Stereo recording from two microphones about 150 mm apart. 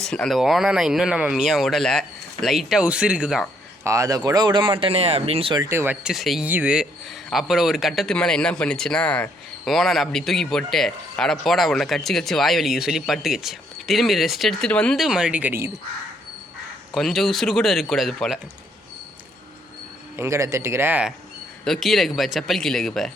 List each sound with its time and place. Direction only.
0.0 s a man's voice: 5° left (ahead or behind)
3.8 s speech: 20° right (ahead or behind); by 5.6 s 35° right (ahead or behind)
5.6 s a man's voice: 15° right (ahead or behind)
16.9 s a man's voice: centre (ahead or behind)
20.1 s speech: 20° right (ahead or behind)
21.6 s a man's voice: centre (ahead or behind)